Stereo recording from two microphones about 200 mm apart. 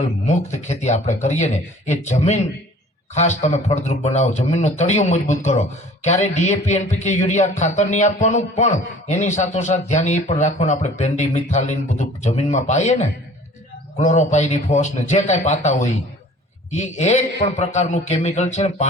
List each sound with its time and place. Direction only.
0.3 s speech: 35° left (ahead or behind)